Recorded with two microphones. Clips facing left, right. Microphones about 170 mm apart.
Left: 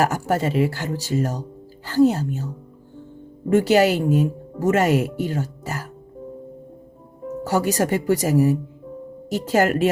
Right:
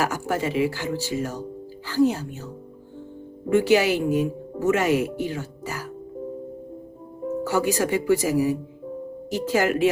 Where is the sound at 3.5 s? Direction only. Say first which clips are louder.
Left 2 dB; 45° left (ahead or behind).